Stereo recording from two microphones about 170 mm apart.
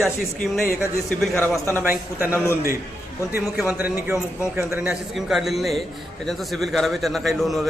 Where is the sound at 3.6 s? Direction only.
10° right (ahead or behind).